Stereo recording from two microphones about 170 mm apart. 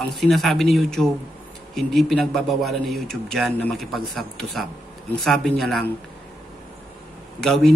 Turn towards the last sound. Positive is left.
turn(degrees=0)  # may be behind; listen again after turning